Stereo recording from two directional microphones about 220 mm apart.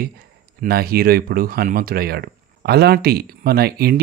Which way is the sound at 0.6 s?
45° right (ahead or behind).